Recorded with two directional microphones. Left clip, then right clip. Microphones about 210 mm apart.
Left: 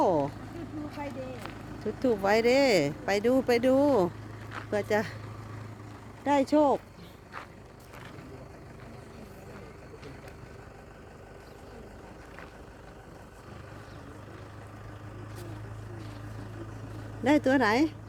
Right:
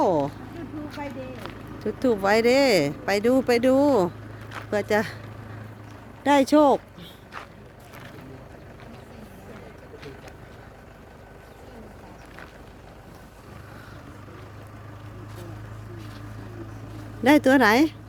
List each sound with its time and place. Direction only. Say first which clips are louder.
1.5 s speech: right 5 dB; 10° right (ahead or behind)
6.2 s speech: right 6 dB; 20° right (ahead or behind)
17.2 s speech: right 7 dB; 20° right (ahead or behind)